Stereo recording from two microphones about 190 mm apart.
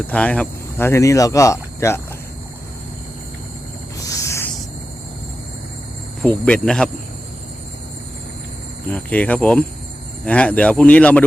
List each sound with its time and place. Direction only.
0.1 s speech: 5° left (ahead or behind)
4.0 s a sound: 15° left (ahead or behind)
6.2 s cricket: 10° left (ahead or behind)
8.9 s speech: 5° left (ahead or behind)